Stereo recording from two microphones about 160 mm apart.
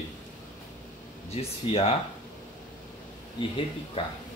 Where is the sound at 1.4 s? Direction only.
35° left (ahead or behind).